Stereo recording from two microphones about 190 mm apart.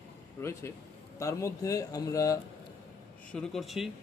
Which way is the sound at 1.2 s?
15° left (ahead or behind).